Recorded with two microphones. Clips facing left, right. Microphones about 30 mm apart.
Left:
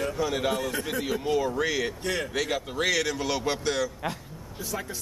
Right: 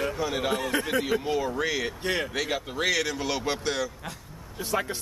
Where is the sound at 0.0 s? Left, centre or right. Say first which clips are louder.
Left 1 dB; centre.